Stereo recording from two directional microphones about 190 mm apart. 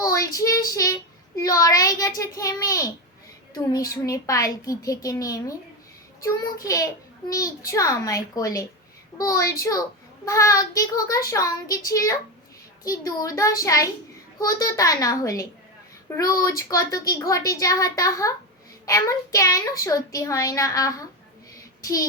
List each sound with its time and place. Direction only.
0.0 s child singing: 15° left (ahead or behind)
0.7 s a child's voice: 15° left (ahead or behind)